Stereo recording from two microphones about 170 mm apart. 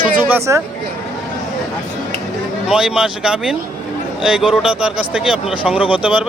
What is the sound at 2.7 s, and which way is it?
Speech, 5° right (ahead or behind).